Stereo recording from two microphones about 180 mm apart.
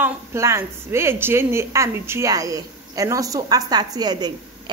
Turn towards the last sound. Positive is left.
turn(degrees=-25)  # may be behind; listen again after turning